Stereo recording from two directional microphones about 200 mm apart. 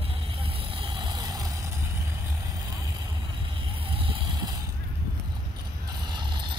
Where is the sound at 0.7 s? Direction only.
25° right (ahead or behind).